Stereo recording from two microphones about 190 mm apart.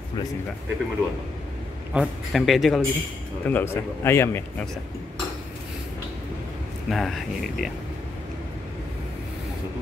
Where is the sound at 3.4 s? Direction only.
10° left (ahead or behind).